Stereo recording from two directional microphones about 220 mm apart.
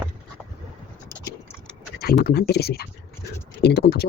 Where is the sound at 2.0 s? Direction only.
45° left (ahead or behind).